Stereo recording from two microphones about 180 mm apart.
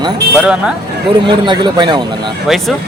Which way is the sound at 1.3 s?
25° right (ahead or behind).